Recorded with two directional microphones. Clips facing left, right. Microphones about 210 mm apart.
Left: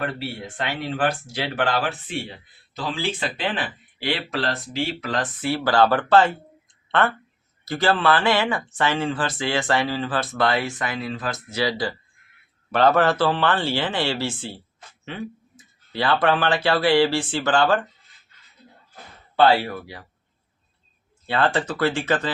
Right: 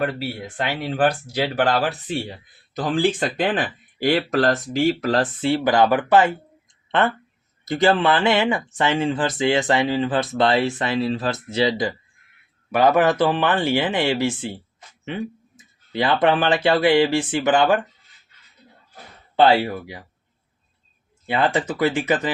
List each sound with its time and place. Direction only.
0.0 s speech: 35° right (ahead or behind)
2.7 s speech: 50° right (ahead or behind)
5.4 s speech: 25° right (ahead or behind)
7.6 s speech: 20° right (ahead or behind)
19.4 s speech: 20° right (ahead or behind)
21.2 s speech: 15° right (ahead or behind)